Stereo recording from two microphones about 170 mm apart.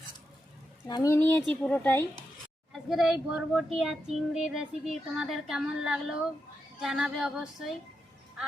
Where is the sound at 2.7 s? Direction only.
Centre (ahead or behind).